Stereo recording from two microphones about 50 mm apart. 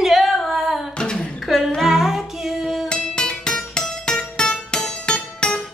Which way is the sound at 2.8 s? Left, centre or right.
Centre.